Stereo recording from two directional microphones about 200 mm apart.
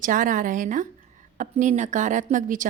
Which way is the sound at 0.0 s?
40° right (ahead or behind).